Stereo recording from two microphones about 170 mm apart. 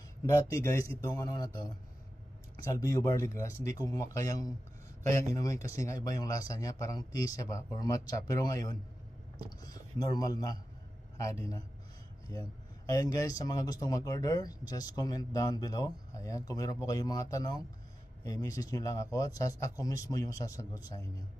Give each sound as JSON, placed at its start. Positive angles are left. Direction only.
{"t": 0.3, "sound": "speech", "side_deg": 15}